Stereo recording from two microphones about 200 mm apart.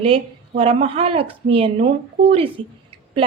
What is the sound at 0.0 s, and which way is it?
A woman's voice, 30° right (ahead or behind).